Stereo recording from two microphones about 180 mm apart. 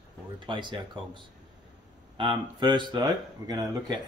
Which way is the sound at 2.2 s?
25° right (ahead or behind).